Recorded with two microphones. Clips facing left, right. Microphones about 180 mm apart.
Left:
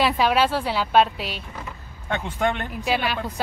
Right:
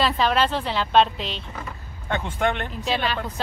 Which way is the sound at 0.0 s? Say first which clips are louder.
Left 1 dB; 10° left (ahead or behind).